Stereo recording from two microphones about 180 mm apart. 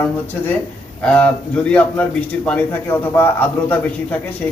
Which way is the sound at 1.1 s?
5° left (ahead or behind).